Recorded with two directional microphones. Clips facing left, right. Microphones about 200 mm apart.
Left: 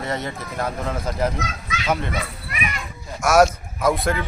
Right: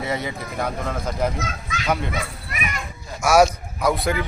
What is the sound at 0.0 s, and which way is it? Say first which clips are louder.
A man's voice: right 1 dB; centre (ahead or behind).